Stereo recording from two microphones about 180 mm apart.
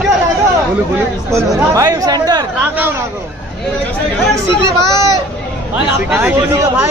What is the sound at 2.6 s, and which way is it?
Speech, 10° right (ahead or behind).